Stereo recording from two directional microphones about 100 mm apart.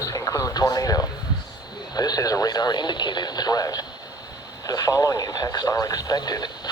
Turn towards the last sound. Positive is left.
turn(degrees=45)  # may be behind; listen again after turning